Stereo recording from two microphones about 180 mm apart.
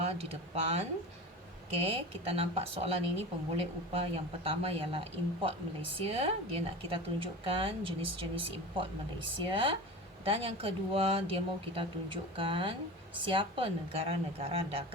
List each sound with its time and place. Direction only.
0.0 s a woman's voice: 35° right (ahead or behind)